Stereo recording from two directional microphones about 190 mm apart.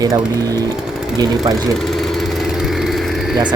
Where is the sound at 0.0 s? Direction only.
20° right (ahead or behind).